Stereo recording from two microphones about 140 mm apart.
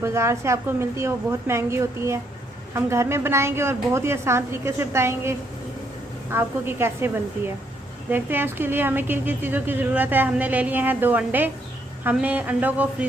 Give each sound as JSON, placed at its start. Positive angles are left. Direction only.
{"t": 0.0, "sound": "a woman's voice", "side_deg": -20}
{"t": 6.3, "sound": "a woman's voice", "side_deg": -15}